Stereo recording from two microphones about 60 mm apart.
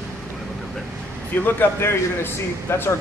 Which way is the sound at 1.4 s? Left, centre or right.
Left.